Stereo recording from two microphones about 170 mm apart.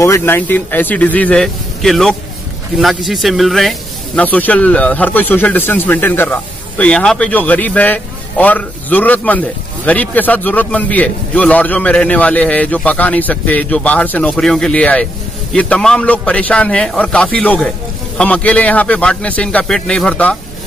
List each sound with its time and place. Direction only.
0.0 s speech: 15° left (ahead or behind)